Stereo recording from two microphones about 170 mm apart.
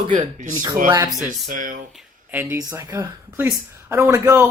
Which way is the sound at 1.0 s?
Centre (ahead or behind).